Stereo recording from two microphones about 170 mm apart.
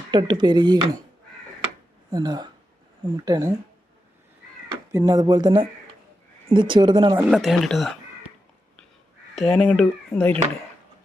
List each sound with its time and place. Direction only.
0.1 s speech: 25° right (ahead or behind)
2.0 s speech: 25° right (ahead or behind)
4.7 s speech: 20° right (ahead or behind)
7.2 s speech: 5° right (ahead or behind)
9.3 s speech: centre (ahead or behind)